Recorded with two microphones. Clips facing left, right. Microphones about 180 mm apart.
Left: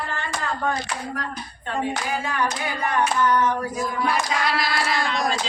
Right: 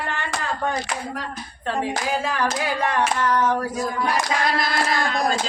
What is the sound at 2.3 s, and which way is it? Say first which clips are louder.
Singing: right 2 dB; 90° right.